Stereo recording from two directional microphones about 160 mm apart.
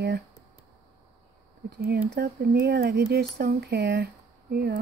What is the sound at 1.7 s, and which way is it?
Speech, 70° right (ahead or behind).